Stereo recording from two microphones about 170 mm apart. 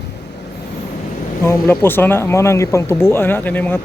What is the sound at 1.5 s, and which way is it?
Speech, 10° left (ahead or behind).